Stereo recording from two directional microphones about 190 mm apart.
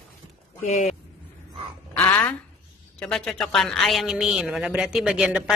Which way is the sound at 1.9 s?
10° left (ahead or behind).